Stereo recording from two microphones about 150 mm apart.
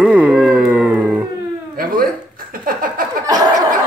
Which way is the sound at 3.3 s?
25° right (ahead or behind).